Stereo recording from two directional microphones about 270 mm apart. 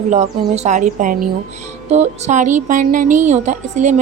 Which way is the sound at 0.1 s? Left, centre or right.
Right.